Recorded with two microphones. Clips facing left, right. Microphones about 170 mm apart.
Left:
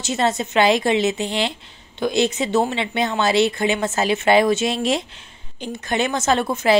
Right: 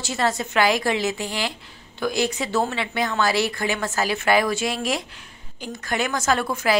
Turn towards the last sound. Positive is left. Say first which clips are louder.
# left 4 dB
turn(degrees=25)  # may be behind; listen again after turning